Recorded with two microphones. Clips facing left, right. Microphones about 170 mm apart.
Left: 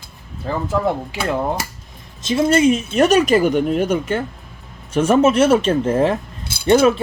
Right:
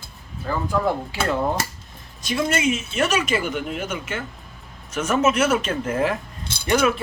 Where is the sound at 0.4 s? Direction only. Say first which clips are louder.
Left 3 dB; 25° left (ahead or behind).